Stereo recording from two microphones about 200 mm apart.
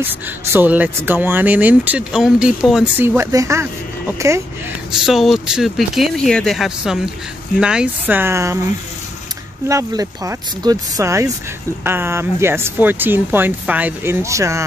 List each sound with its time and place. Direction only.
0.0 s speech: 10° right (ahead or behind)
5.0 s speech: centre (ahead or behind)
9.7 s speech: 15° right (ahead or behind)